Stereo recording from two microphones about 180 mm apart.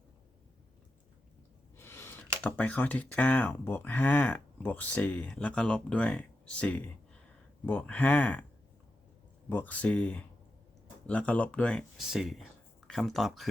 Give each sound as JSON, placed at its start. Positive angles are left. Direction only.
{"t": 1.7, "sound": "sigh", "side_deg": 15}
{"t": 2.6, "sound": "speech", "side_deg": 10}
{"t": 9.5, "sound": "speech", "side_deg": 10}